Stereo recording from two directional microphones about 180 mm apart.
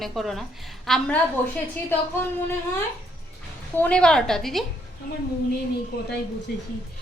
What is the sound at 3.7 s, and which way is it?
Speech, 5° left (ahead or behind).